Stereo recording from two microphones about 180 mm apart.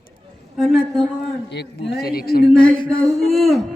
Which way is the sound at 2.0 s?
60° left (ahead or behind).